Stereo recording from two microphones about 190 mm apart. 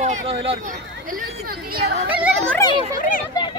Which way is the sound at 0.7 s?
45° right (ahead or behind).